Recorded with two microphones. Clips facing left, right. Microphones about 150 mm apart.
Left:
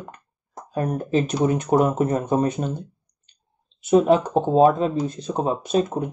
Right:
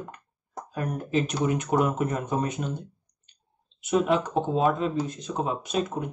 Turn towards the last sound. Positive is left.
turn(degrees=30)  # may be behind; listen again after turning